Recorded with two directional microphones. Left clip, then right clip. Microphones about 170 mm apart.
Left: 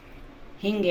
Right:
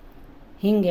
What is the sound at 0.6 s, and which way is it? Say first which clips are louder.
Speech: right 5 dB; 75° right (ahead or behind).